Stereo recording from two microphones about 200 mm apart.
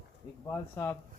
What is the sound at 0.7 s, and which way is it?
Speech, 10° left (ahead or behind).